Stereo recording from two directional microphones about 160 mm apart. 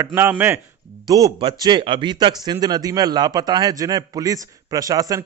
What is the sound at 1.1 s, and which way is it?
A man's voice, 25° right (ahead or behind).